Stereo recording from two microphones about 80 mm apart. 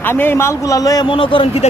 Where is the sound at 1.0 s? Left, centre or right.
Left.